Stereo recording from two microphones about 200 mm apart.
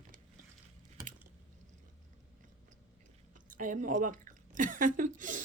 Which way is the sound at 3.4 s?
40° right (ahead or behind).